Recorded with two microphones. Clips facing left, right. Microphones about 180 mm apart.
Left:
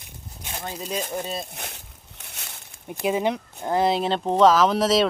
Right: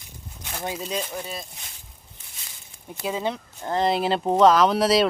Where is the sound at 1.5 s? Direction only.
65° left (ahead or behind).